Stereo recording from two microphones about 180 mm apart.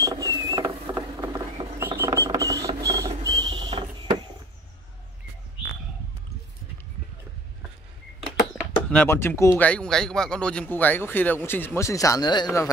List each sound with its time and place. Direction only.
0.0 s rodents: 20° right (ahead or behind)
8.8 s speech: 10° left (ahead or behind)